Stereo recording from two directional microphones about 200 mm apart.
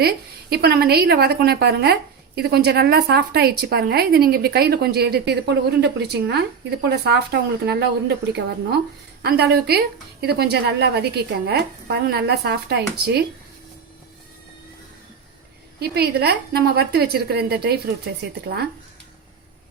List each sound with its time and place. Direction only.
0.5 s a woman's voice: 50° right (ahead or behind)
15.8 s speech: 55° right (ahead or behind)